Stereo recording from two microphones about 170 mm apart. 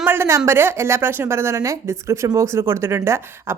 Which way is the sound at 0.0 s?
15° right (ahead or behind).